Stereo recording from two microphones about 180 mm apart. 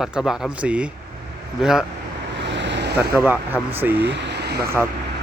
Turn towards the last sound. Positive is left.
turn(degrees=-65)  # may be behind; listen again after turning